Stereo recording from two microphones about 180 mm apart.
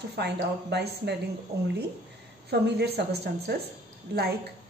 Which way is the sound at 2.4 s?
65° right (ahead or behind).